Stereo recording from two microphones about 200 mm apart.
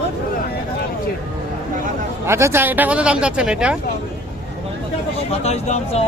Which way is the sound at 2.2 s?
10° right (ahead or behind).